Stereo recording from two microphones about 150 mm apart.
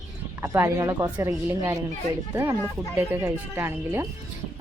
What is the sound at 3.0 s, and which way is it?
Speech, 15° right (ahead or behind).